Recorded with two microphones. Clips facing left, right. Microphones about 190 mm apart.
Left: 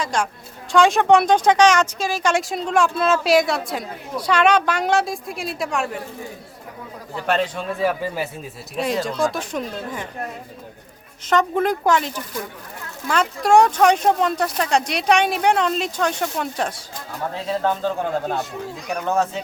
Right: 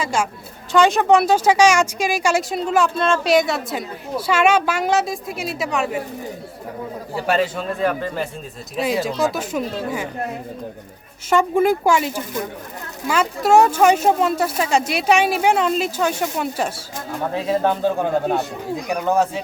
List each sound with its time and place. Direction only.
0.0 s a man's voice: 5° right (ahead or behind)
7.2 s speech: 5° right (ahead or behind)
11.3 s a man's voice: 10° right (ahead or behind)
17.3 s a man's voice: 15° right (ahead or behind)